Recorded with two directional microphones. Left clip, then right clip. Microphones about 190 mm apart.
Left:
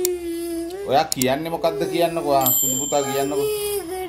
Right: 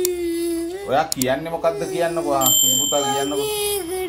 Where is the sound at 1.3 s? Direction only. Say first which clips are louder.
Even; 55° left (ahead or behind).